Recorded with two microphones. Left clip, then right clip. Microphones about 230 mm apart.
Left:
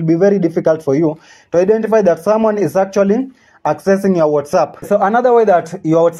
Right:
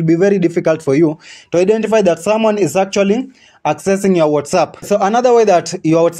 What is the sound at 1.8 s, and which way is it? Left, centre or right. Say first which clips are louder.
Speech: left 1 dB; right.